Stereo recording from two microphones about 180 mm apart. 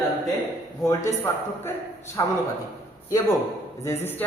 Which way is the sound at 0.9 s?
15° left (ahead or behind).